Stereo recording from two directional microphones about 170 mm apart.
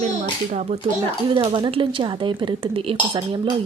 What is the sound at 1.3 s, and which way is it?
Speech, 30° right (ahead or behind).